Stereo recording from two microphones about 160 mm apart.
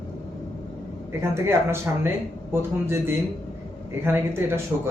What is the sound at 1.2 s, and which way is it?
Speech, 15° right (ahead or behind).